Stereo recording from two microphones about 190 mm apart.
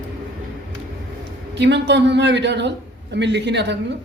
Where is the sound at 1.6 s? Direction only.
65° right (ahead or behind).